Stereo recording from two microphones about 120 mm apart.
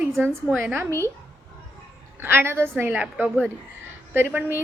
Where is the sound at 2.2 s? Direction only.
20° right (ahead or behind).